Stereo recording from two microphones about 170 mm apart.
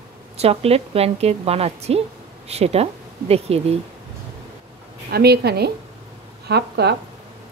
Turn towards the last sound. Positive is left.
turn(degrees=-75)  # may be behind; listen again after turning